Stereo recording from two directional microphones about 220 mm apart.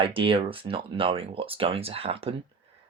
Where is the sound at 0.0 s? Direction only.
25° right (ahead or behind).